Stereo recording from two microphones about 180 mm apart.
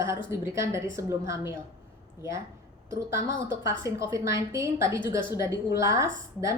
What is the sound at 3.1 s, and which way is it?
A woman's voice, 15° right (ahead or behind).